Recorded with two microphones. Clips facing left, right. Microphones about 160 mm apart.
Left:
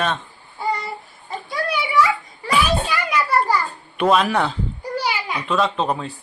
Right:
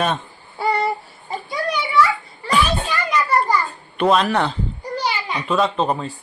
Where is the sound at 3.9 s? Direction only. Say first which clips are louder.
Even; 5° left (ahead or behind).